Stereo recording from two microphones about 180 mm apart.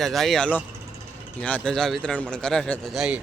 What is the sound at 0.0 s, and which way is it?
A man's voice, centre (ahead or behind).